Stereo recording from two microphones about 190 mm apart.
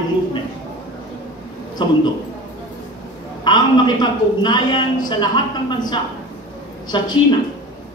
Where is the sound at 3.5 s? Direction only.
20° left (ahead or behind).